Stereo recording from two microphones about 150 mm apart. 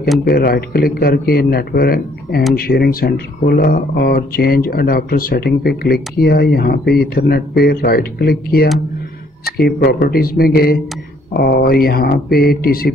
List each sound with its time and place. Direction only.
0.2 s speech: 90° left